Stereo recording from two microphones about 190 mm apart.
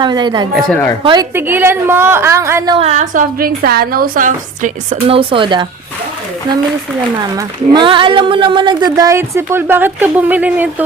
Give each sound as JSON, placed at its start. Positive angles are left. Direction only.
{"t": 0.0, "sound": "speech", "side_deg": -25}
{"t": 0.5, "sound": "speech", "side_deg": 5}
{"t": 1.0, "sound": "speech", "side_deg": -20}
{"t": 2.7, "sound": "a woman's voice", "side_deg": -35}
{"t": 5.0, "sound": "speech", "side_deg": -30}
{"t": 7.3, "sound": "speech", "side_deg": -25}